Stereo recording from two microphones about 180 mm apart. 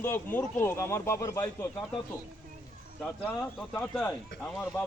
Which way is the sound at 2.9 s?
5° left (ahead or behind).